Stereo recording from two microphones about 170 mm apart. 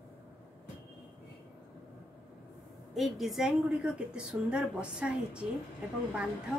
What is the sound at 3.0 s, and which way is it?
A woman's voice, centre (ahead or behind).